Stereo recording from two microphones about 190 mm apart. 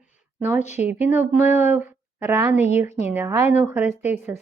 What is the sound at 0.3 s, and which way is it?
Speech, 10° right (ahead or behind).